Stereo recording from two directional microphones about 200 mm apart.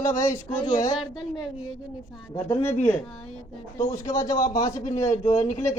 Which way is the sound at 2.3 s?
35° left (ahead or behind).